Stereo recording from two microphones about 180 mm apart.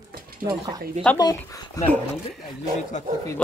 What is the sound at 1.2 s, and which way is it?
Speech, 20° left (ahead or behind).